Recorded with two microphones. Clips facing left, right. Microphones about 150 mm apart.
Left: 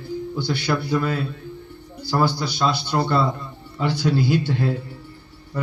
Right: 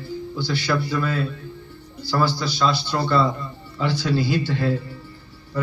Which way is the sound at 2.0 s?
55° left (ahead or behind).